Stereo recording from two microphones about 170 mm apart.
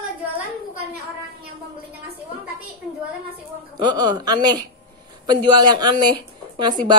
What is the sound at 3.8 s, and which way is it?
Speech, 25° right (ahead or behind).